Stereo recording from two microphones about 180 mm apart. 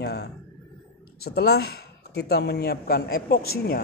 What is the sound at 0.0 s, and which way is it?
Speech, 65° left (ahead or behind).